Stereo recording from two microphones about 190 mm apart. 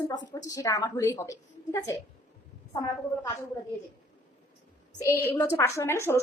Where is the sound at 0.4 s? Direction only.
15° left (ahead or behind).